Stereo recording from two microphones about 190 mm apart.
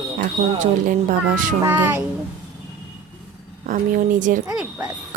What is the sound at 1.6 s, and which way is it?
Speech, 10° right (ahead or behind).